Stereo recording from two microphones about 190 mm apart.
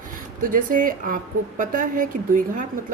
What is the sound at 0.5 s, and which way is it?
Speech, 45° right (ahead or behind).